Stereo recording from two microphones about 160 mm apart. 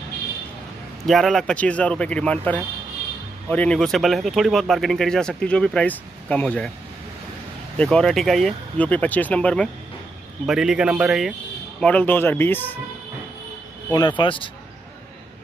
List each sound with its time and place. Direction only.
1.0 s speech: centre (ahead or behind)
3.4 s speech: 5° left (ahead or behind)
7.7 s speech: 5° left (ahead or behind)
10.4 s speech: 5° right (ahead or behind)
11.8 s speech: 10° left (ahead or behind)
13.9 s speech: 30° left (ahead or behind)